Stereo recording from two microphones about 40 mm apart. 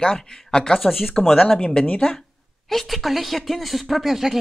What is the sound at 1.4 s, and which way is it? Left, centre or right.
Speech, left.